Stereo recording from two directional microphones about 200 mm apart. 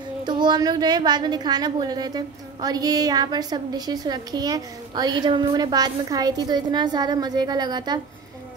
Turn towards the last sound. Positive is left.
turn(degrees=-20)  # may be behind; listen again after turning